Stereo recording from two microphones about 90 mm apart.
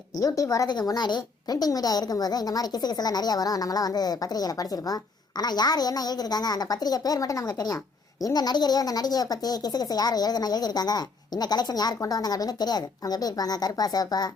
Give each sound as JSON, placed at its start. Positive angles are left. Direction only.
{"t": 0.2, "sound": "speech", "side_deg": 40}